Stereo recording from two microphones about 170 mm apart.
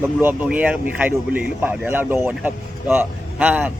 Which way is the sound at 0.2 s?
10° right (ahead or behind).